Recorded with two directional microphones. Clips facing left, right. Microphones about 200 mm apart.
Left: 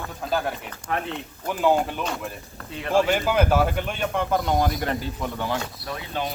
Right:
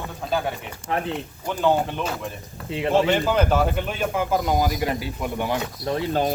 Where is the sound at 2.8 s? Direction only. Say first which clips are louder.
Right 1 dB; 20° right (ahead or behind).